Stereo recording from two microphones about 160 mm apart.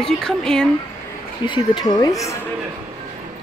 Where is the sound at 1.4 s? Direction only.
30° left (ahead or behind).